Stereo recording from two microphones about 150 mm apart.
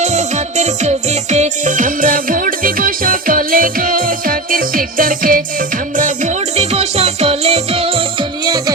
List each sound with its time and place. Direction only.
0.0 s music: 50° right (ahead or behind); by 5.4 s 70° right (ahead or behind)
6.0 s music: 50° right (ahead or behind)
8.4 s music: 25° right (ahead or behind)